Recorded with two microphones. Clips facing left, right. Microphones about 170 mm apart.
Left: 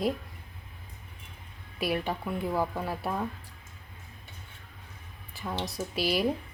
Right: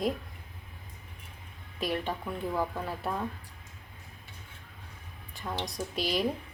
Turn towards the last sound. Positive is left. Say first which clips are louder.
# left 2 dB
turn(degrees=5)  # may be behind; listen again after turning